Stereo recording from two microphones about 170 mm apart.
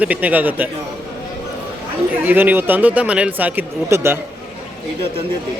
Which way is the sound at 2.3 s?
10° right (ahead or behind).